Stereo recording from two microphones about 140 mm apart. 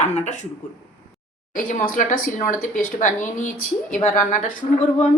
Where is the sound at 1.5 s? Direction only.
70° left (ahead or behind).